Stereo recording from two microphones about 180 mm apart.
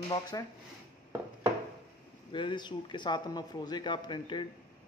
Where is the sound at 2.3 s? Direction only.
25° left (ahead or behind).